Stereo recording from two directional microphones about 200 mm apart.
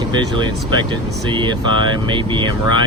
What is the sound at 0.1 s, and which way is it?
Speech, 20° right (ahead or behind).